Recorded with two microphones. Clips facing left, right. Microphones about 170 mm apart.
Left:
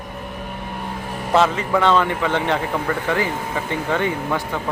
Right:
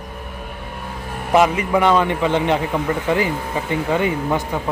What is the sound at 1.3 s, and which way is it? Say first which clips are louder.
A man's voice: right 2 dB; 15° right (ahead or behind).